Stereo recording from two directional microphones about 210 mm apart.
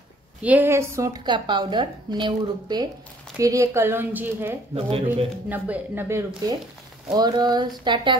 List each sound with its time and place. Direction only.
0.4 s a woman's voice: 10° right (ahead or behind)